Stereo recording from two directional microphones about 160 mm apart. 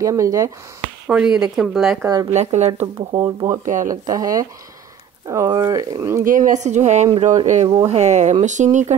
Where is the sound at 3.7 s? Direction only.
55° right (ahead or behind).